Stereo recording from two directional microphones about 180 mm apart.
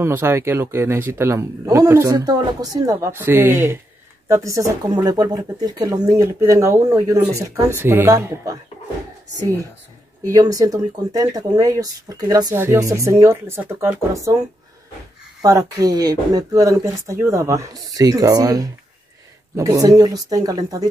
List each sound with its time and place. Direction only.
0.0 s speech: 15° right (ahead or behind)
10.3 s speech: 20° right (ahead or behind)
15.4 s speech: 20° right (ahead or behind)